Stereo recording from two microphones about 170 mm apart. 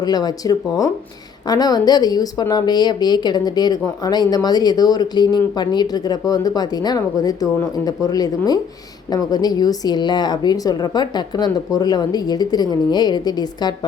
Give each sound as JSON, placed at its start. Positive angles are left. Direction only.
{"t": 0.0, "sound": "speech", "side_deg": 25}